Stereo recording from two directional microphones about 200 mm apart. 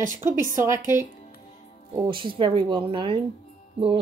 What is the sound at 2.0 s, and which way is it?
Speech, 25° right (ahead or behind).